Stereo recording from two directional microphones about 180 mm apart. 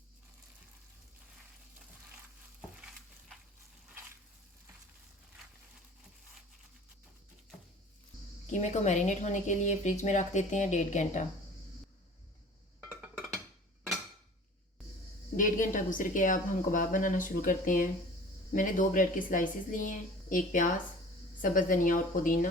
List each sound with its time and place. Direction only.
2.6 s stir: 5° right (ahead or behind)
8.4 s a woman's voice: 40° left (ahead or behind)
13.0 s music: centre (ahead or behind)
15.4 s a woman's voice: 45° left (ahead or behind)